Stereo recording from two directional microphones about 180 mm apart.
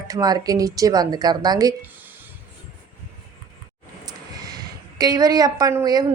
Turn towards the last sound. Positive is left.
turn(degrees=-20)  # may be behind; listen again after turning